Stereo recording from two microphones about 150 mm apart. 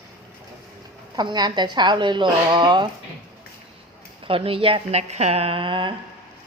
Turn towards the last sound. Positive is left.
turn(degrees=-35)  # may be behind; listen again after turning